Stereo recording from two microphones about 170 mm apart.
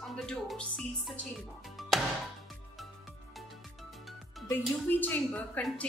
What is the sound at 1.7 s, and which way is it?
Music, centre (ahead or behind).